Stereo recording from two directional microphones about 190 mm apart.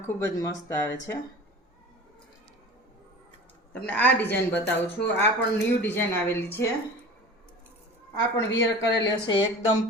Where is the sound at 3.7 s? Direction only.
5° left (ahead or behind).